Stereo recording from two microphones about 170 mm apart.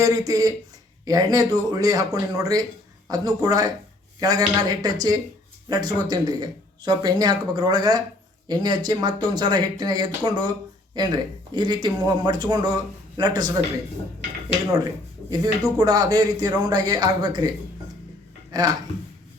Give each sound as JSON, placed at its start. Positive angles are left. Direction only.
{"t": 0.0, "sound": "speech", "side_deg": -20}
{"t": 15.3, "sound": "speech", "side_deg": -20}
{"t": 18.5, "sound": "speech", "side_deg": -25}